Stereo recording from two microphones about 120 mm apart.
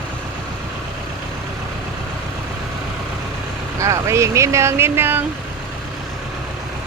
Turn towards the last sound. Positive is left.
turn(degrees=-20)  # may be behind; listen again after turning